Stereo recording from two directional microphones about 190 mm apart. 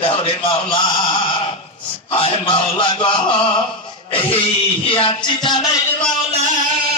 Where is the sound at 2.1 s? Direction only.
30° left (ahead or behind).